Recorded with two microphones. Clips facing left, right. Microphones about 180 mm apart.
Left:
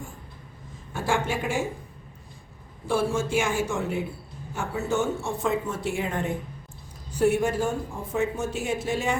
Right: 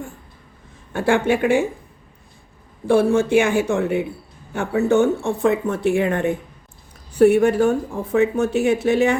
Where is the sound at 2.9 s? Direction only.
60° right (ahead or behind).